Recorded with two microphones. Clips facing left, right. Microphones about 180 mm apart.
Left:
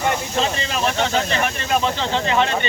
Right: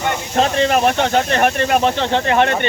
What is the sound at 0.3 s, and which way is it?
Speech, 55° right (ahead or behind).